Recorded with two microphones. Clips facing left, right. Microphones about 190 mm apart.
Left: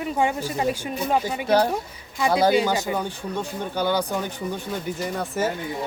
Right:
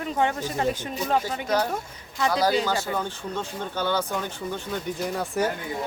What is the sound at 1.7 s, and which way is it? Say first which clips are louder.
Speech: left 3 dB; 10° left (ahead or behind).